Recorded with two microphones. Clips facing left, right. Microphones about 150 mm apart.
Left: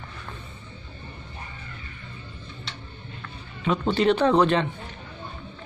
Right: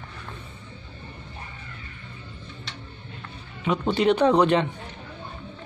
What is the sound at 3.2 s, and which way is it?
Speech, 15° right (ahead or behind).